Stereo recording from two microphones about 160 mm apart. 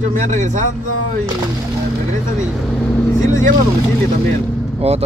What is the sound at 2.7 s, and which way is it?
Speech, 5° left (ahead or behind).